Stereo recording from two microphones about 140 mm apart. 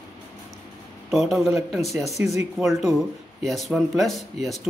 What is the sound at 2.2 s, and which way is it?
Speech, 15° right (ahead or behind).